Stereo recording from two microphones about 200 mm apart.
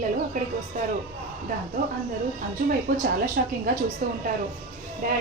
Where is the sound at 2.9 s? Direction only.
45° right (ahead or behind).